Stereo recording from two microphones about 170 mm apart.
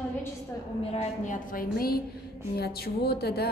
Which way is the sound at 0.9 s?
40° left (ahead or behind).